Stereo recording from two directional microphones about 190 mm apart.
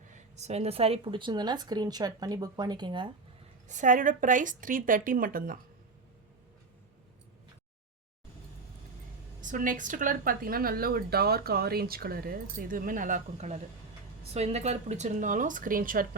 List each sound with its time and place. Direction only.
0.1 s speech: 35° right (ahead or behind)
3.7 s speech: 40° right (ahead or behind)
9.4 s speech: 45° right (ahead or behind)